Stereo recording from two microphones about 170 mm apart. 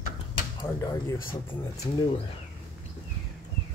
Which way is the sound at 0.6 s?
20° left (ahead or behind).